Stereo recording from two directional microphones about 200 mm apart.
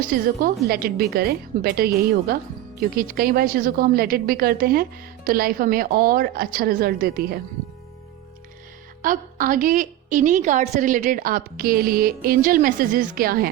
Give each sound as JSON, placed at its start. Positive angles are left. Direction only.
{"t": 0.0, "sound": "a woman's voice", "side_deg": -45}
{"t": 9.0, "sound": "a woman's voice", "side_deg": -45}